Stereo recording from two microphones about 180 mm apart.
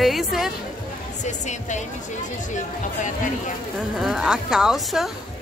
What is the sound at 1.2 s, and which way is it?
Speech, 40° left (ahead or behind).